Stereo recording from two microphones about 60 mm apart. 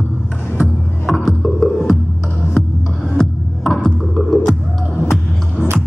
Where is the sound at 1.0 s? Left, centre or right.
Centre.